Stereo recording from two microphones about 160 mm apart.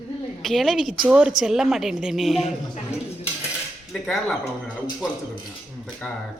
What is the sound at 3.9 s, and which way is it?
Speech, centre (ahead or behind).